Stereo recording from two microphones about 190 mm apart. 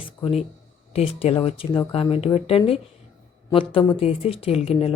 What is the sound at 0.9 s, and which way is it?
Speech, 30° left (ahead or behind).